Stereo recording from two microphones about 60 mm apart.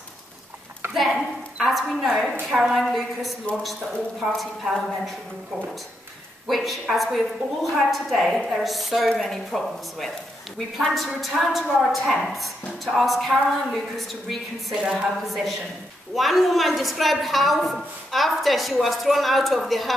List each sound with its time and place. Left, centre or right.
0.9 s a woman's voice: centre
4.4 s a woman's voice: centre
6.4 s a woman's voice: centre